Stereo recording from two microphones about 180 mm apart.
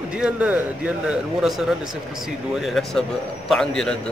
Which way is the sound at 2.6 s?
Centre (ahead or behind).